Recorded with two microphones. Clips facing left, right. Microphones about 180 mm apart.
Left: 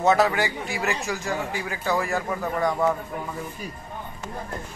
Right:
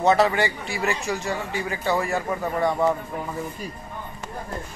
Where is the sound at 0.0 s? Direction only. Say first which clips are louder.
Right 1 dB; centre (ahead or behind).